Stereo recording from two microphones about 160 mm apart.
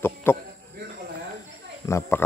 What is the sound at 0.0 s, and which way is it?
Speech, 15° left (ahead or behind).